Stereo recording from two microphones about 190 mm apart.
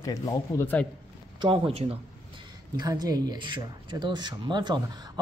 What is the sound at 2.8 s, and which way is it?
Speech, 20° right (ahead or behind).